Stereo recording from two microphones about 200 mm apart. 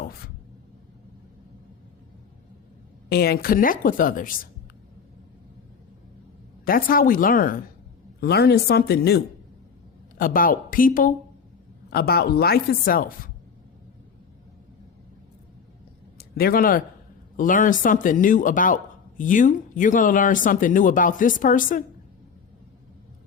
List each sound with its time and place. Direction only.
3.1 s speech: 50° left (ahead or behind)
6.7 s speech: 45° left (ahead or behind)
16.1 s speech: 50° left (ahead or behind)